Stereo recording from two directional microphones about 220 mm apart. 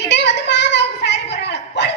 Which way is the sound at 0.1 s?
50° left (ahead or behind).